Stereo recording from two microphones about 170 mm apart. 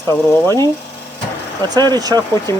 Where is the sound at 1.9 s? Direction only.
25° right (ahead or behind).